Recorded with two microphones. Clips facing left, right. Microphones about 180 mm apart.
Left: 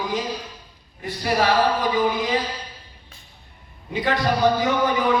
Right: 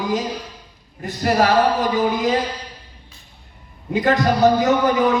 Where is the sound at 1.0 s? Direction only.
45° right (ahead or behind).